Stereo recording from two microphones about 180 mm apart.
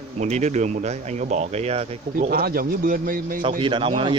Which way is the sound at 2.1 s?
55° right (ahead or behind).